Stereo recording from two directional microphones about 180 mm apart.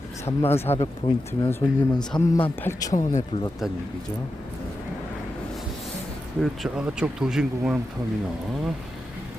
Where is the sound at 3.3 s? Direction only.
30° left (ahead or behind).